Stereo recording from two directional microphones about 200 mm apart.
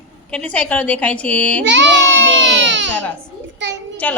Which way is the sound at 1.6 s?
65° right (ahead or behind).